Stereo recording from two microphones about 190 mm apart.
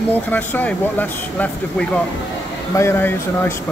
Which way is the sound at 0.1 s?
10° left (ahead or behind).